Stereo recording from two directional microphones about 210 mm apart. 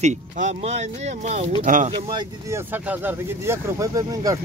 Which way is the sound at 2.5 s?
10° right (ahead or behind).